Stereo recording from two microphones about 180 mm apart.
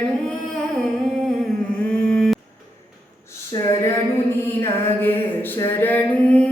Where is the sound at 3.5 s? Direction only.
15° left (ahead or behind).